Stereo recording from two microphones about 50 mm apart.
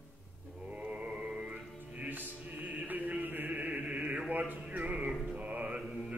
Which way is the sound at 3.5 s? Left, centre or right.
Right.